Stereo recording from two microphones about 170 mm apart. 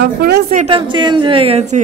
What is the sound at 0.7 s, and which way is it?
A woman's voice, 25° right (ahead or behind).